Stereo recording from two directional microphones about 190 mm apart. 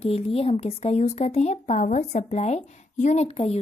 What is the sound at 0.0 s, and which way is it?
Speech, 30° left (ahead or behind).